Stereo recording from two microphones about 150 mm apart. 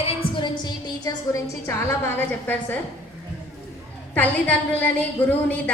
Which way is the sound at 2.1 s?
10° left (ahead or behind).